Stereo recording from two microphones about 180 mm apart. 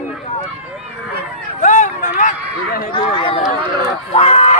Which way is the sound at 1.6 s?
45° left (ahead or behind).